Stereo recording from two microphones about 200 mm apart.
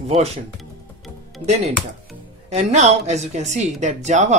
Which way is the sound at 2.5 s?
35° right (ahead or behind).